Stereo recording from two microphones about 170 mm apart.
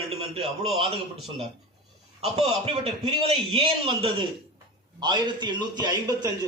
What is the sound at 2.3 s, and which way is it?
A man's voice, 35° right (ahead or behind).